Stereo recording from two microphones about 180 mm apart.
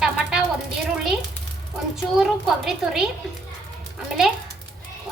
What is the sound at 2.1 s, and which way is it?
Speech, centre (ahead or behind).